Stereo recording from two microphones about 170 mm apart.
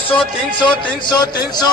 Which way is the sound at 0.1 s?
30° left (ahead or behind).